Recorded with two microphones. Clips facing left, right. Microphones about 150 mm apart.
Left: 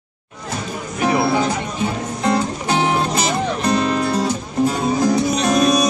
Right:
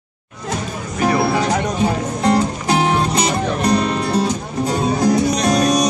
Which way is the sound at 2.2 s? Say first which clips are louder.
Right 2 dB; 30° right (ahead or behind).